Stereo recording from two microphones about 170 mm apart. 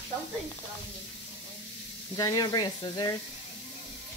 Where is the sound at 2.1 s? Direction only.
20° left (ahead or behind).